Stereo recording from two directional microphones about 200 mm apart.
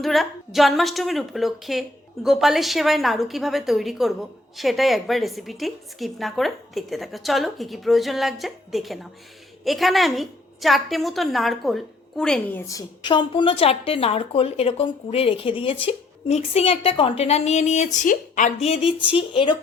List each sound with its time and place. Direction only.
0.0 s a woman's voice: centre (ahead or behind); by 19.5 s 25° left (ahead or behind)